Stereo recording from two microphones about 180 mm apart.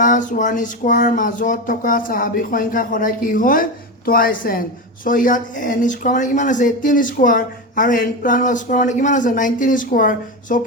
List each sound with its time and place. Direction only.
0.0 s speech: 45° left (ahead or behind)